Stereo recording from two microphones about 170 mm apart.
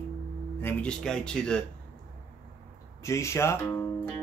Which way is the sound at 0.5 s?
10° left (ahead or behind).